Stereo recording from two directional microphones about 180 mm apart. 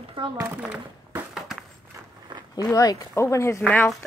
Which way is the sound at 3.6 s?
5° left (ahead or behind).